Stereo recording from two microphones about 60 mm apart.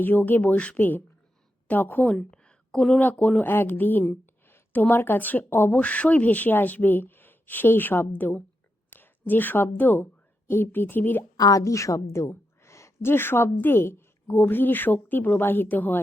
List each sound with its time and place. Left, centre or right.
0.0 s a woman's voice: left
2.0 s a sound: centre
3.0 s speech: left
5.7 s speech: left
11.3 s a woman's voice: left